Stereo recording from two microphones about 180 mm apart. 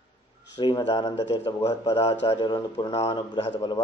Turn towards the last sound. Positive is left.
turn(degrees=25)  # may be behind; listen again after turning